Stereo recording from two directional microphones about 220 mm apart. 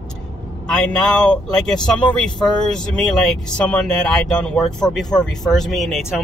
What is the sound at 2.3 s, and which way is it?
Speech, 20° left (ahead or behind).